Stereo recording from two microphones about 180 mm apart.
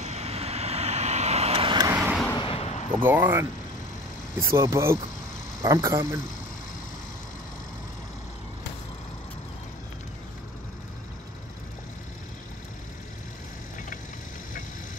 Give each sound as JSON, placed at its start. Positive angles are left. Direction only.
{"t": 0.0, "sound": "vehicle", "side_deg": -35}
{"t": 2.0, "sound": "vehicle", "side_deg": -5}
{"t": 2.3, "sound": "vehicle", "side_deg": 30}
{"t": 3.0, "sound": "speech", "side_deg": -10}
{"t": 4.5, "sound": "speech", "side_deg": -15}